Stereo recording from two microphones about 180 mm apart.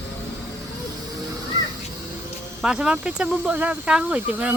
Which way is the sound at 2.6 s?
5° right (ahead or behind).